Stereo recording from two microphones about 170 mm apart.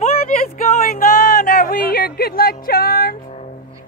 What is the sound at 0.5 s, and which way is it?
Speech, 45° left (ahead or behind).